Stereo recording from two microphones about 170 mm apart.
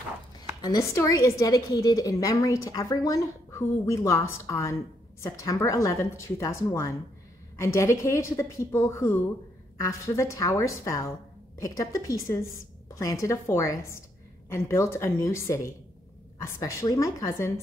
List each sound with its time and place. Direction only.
0.6 s speech: 20° left (ahead or behind)